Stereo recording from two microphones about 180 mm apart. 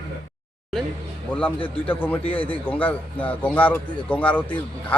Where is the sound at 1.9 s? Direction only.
10° left (ahead or behind).